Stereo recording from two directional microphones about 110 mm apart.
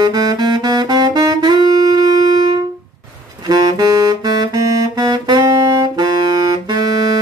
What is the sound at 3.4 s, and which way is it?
Saxophone, 35° right (ahead or behind).